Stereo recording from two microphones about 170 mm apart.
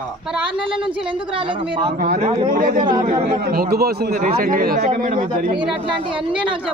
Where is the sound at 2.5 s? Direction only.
55° right (ahead or behind).